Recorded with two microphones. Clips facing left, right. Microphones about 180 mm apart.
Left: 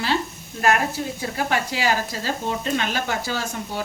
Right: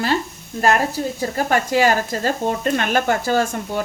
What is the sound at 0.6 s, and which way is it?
Speech, 35° right (ahead or behind).